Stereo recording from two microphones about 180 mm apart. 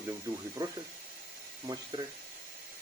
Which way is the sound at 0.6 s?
20° right (ahead or behind).